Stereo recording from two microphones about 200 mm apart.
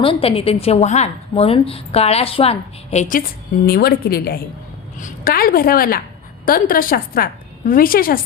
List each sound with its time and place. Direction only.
0.0 s a woman's voice: 25° left (ahead or behind); by 8.2 s 45° left (ahead or behind)